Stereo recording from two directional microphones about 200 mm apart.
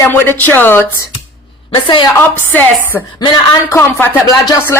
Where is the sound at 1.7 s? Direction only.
25° left (ahead or behind).